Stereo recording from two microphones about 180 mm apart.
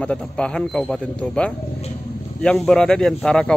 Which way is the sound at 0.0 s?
5° left (ahead or behind).